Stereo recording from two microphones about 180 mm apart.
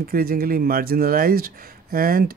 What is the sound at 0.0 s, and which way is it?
Speech, 55° right (ahead or behind).